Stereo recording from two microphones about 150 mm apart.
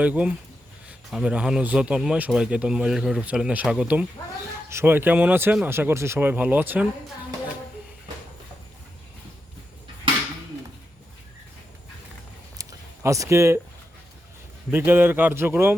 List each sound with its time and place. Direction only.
0.0 s a man's voice: 10° right (ahead or behind)
12.5 s a sound: 20° right (ahead or behind)
14.7 s a man's voice: 15° right (ahead or behind)